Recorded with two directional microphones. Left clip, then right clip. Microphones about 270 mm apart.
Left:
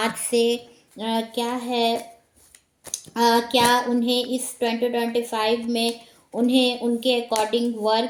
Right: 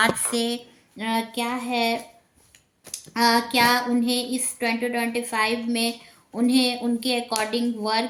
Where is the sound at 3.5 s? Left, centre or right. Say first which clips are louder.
Left 1 dB; right.